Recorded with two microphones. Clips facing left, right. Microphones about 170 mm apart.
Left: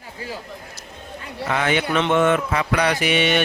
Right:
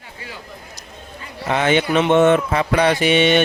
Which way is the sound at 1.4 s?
25° right (ahead or behind).